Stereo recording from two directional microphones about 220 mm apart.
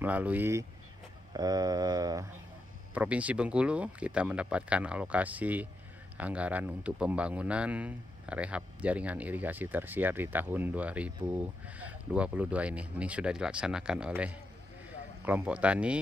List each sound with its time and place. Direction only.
0.0 s a man's voice: 5° right (ahead or behind)
2.9 s a man's voice: 5° right (ahead or behind)